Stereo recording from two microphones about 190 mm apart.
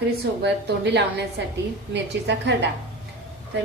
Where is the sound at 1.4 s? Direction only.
65° right (ahead or behind).